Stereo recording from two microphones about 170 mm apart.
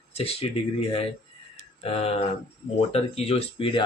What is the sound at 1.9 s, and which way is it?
Speech, 35° left (ahead or behind).